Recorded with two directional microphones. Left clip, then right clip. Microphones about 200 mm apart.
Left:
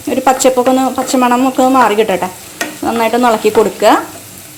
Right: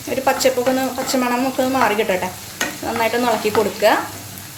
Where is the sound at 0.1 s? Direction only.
40° left (ahead or behind).